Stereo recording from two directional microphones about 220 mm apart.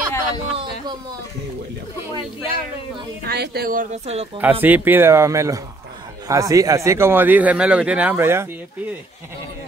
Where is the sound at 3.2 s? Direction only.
45° right (ahead or behind); by 4.3 s 30° right (ahead or behind).